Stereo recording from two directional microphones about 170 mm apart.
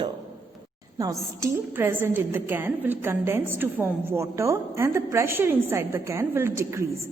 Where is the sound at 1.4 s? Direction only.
15° right (ahead or behind).